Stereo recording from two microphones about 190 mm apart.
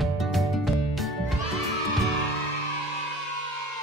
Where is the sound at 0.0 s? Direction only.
Centre (ahead or behind).